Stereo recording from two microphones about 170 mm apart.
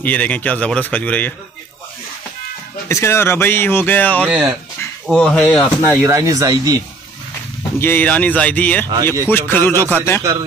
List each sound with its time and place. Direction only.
0.0 s speech: 10° left (ahead or behind)
2.9 s speech: 15° left (ahead or behind)
4.2 s speech: 10° right (ahead or behind)
5.0 s speech: 5° left (ahead or behind)
6.0 s speech: 20° right (ahead or behind)
7.8 s speech: 10° left (ahead or behind)